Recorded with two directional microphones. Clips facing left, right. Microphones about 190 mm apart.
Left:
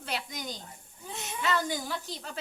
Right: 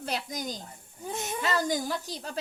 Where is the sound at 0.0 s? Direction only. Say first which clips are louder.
Right 3 dB; 45° right (ahead or behind).